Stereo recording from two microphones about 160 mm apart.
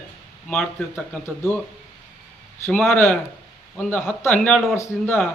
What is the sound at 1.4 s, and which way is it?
Speech, 15° left (ahead or behind).